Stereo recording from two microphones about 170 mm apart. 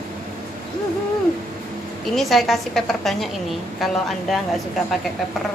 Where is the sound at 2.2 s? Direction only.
Centre (ahead or behind).